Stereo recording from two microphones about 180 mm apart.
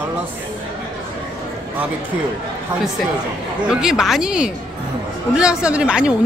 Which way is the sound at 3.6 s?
5° right (ahead or behind).